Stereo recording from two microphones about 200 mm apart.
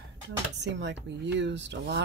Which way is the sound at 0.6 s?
60° right (ahead or behind).